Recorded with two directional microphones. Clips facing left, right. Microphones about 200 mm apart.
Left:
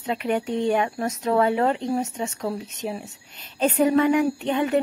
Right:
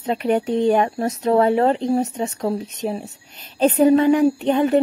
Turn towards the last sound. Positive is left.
turn(degrees=-35)  # may be behind; listen again after turning